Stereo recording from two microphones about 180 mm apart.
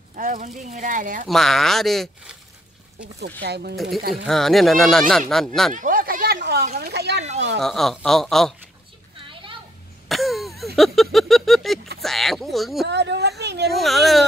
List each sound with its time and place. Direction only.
0.1 s speech: 50° right (ahead or behind)
1.3 s speech: centre (ahead or behind)
3.2 s speech: 65° right (ahead or behind)
3.7 s speech: centre (ahead or behind)
5.8 s a sound: 50° right (ahead or behind)
6.8 s speech: 65° right (ahead or behind)
7.6 s speech: centre (ahead or behind)
10.0 s throat clearing: centre (ahead or behind)
10.8 s a sound: centre (ahead or behind)
12.0 s speech: centre (ahead or behind)
12.8 s speech: 70° right (ahead or behind)
13.7 s speech: centre (ahead or behind)